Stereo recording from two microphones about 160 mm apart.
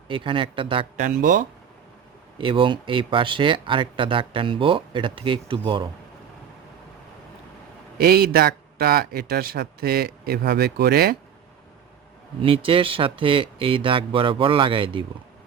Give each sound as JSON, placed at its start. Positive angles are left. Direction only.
{"t": 0.1, "sound": "speech", "side_deg": -30}
{"t": 0.9, "sound": "speech", "side_deg": -55}
{"t": 2.4, "sound": "speech", "side_deg": -30}
{"t": 7.9, "sound": "speech", "side_deg": -75}
{"t": 12.4, "sound": "speech", "side_deg": -35}